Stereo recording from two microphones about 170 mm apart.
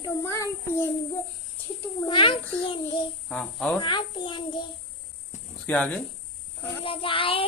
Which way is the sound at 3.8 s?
25° left (ahead or behind).